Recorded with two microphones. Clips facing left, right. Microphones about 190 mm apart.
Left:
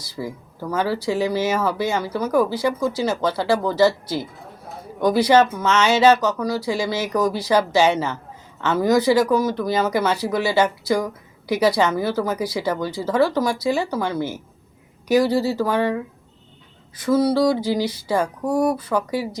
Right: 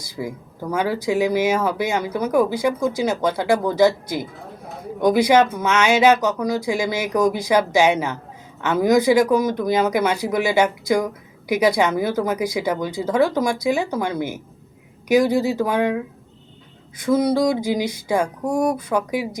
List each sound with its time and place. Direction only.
0.2 s speech: 15° right (ahead or behind)
17.1 s speech: 15° right (ahead or behind)